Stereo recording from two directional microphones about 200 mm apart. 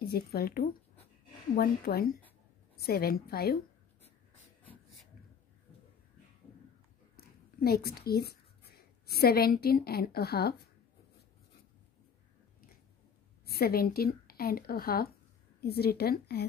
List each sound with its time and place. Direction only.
0.1 s speech: 50° left (ahead or behind)
7.2 s speech: 50° left (ahead or behind)
13.5 s speech: 50° left (ahead or behind)